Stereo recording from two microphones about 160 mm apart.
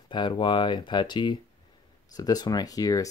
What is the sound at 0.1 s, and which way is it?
Speech, 30° left (ahead or behind).